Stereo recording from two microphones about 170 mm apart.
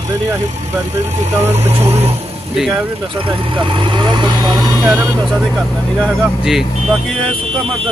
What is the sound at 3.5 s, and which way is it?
Speech, 30° right (ahead or behind).